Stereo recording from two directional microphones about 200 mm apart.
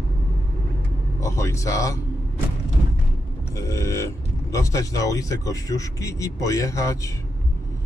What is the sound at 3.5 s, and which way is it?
Speech, 15° left (ahead or behind).